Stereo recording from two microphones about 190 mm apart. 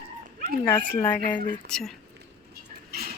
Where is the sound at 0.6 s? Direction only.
10° left (ahead or behind).